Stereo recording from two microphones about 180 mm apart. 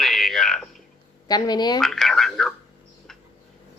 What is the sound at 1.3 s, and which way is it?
Speech, 20° left (ahead or behind).